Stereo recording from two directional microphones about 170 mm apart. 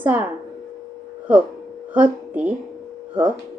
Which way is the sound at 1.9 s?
10° right (ahead or behind).